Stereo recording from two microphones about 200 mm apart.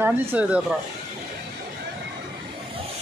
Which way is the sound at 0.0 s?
10° right (ahead or behind).